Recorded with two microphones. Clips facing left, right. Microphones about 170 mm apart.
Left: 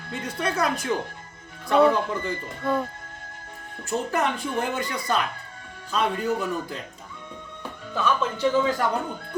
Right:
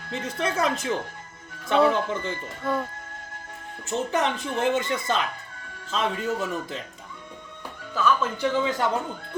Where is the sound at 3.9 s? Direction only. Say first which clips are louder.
Even; 20° right (ahead or behind).